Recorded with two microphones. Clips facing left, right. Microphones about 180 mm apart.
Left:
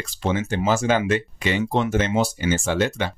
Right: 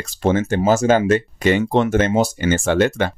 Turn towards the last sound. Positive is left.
turn(degrees=-55)  # may be behind; listen again after turning